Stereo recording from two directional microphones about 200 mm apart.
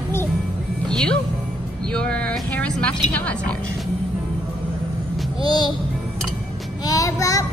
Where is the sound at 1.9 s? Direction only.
5° left (ahead or behind).